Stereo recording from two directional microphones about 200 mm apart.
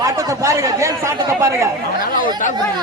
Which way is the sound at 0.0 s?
15° right (ahead or behind).